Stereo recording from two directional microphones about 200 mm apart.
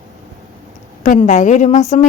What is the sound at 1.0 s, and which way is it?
A woman's voice, 40° left (ahead or behind).